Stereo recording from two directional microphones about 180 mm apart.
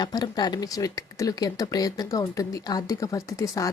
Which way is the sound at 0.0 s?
20° left (ahead or behind).